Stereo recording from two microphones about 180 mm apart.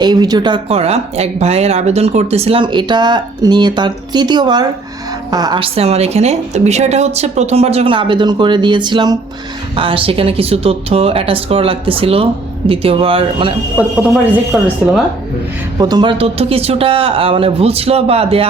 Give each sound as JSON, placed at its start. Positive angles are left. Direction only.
{"t": 0.0, "sound": "speech", "side_deg": -20}
{"t": 13.8, "sound": "speech", "side_deg": -10}
{"t": 15.8, "sound": "speech", "side_deg": -25}